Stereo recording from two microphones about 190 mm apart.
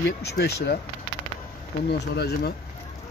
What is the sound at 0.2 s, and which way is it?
Speech, 60° left (ahead or behind).